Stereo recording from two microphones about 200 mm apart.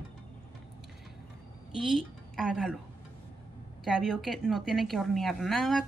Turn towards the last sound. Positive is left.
turn(degrees=0)  # may be behind; listen again after turning